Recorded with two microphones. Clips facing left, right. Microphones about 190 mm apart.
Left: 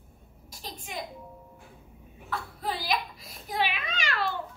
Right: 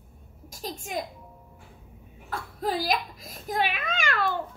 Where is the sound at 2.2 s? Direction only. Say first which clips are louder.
Right 3 dB; 45° right (ahead or behind).